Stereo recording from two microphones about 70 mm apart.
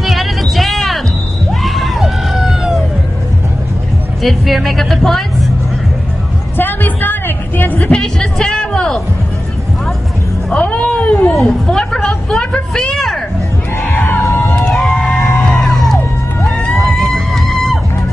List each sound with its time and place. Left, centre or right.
0.0 s music: centre
1.5 s screaming: centre
4.2 s a woman's voice: centre
6.5 s a sound: left
7.9 s speech: centre
10.6 s a sound: centre
11.3 s a woman's voice: centre
13.8 s music: centre
14.2 s music: left
14.6 s music: centre